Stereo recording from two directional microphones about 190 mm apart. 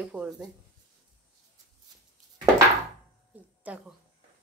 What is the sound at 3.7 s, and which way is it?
Speech, 5° right (ahead or behind).